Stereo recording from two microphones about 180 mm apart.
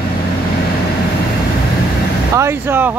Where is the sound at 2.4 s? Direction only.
15° right (ahead or behind).